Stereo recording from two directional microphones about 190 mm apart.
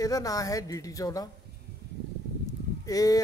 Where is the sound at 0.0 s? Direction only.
20° left (ahead or behind).